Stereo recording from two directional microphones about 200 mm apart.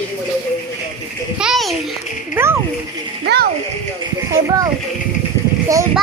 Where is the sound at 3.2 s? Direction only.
55° right (ahead or behind).